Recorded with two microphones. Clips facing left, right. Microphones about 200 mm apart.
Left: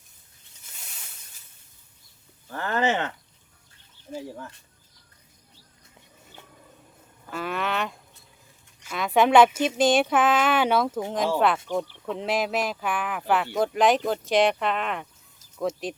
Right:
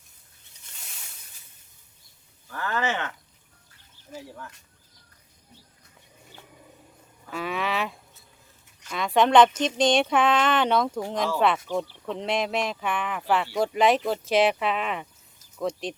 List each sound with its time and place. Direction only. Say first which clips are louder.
2.5 s speech: left 3 dB; 30° left (ahead or behind)
4.1 s speech: left 5 dB; 30° left (ahead or behind)
7.3 s speech: even; centre (ahead or behind)